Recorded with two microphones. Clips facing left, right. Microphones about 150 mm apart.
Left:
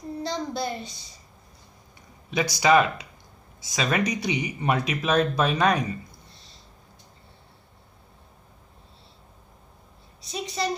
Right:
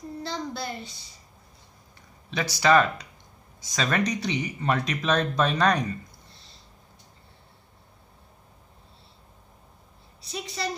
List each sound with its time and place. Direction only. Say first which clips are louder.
0.2 s a child's voice: left 4 dB; 15° left (ahead or behind)
2.3 s speech: left 1 dB; 15° left (ahead or behind)
10.3 s a woman's voice: left 3 dB; 20° left (ahead or behind)